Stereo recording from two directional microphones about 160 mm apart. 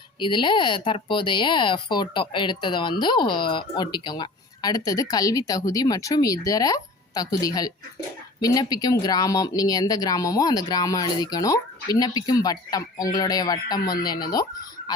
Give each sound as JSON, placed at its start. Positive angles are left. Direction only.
{"t": 0.2, "sound": "speech", "side_deg": 30}